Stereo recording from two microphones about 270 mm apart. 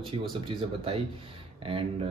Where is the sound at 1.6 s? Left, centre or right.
Centre.